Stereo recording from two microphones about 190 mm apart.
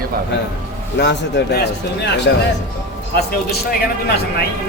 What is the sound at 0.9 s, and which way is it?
Speech, 65° left (ahead or behind).